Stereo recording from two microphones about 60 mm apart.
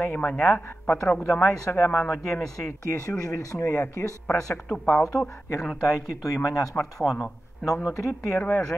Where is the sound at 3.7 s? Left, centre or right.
Left.